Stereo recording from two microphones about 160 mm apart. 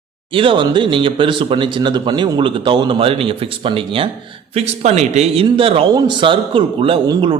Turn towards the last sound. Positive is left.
turn(degrees=-30)  # may be behind; listen again after turning